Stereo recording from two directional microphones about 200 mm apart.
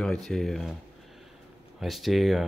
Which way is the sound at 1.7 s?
Centre (ahead or behind).